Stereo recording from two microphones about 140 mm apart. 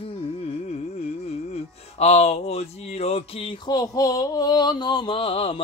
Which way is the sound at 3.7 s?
25° left (ahead or behind).